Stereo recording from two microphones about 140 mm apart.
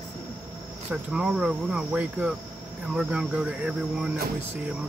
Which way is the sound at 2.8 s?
5° right (ahead or behind).